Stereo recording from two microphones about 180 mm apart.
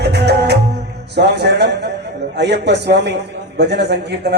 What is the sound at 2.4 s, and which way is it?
A man's voice, 70° right (ahead or behind).